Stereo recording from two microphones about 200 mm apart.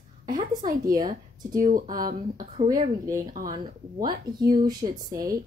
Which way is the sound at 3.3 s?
45° right (ahead or behind).